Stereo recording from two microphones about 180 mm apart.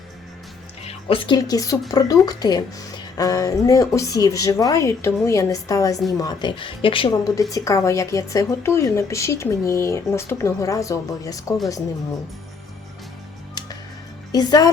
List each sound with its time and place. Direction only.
0.9 s a woman's voice: 30° left (ahead or behind)
14.3 s speech: 20° left (ahead or behind)